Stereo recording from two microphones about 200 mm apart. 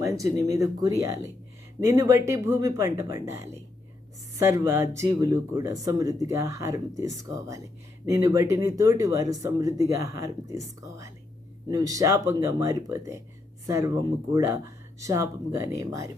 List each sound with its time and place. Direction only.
0.0 s speech: 15° right (ahead or behind)